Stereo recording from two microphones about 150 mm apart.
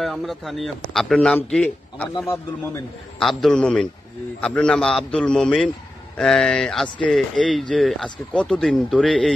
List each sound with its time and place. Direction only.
0.0 s speech: centre (ahead or behind)
2.1 s a man's voice: 20° left (ahead or behind)
3.2 s speech: centre (ahead or behind)